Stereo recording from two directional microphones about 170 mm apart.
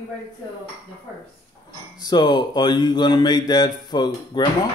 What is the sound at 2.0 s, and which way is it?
Speech, 25° left (ahead or behind).